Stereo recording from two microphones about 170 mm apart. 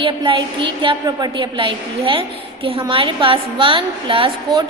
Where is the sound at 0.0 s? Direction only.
30° right (ahead or behind).